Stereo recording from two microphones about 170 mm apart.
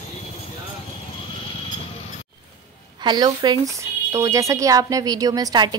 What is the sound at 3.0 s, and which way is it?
A woman's voice, 25° right (ahead or behind).